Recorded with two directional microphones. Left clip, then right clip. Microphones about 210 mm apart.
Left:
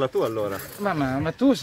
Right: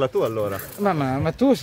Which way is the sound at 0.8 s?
50° right (ahead or behind).